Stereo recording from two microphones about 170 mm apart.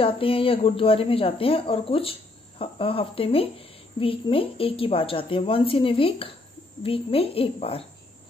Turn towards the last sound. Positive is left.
turn(degrees=35)  # may be behind; listen again after turning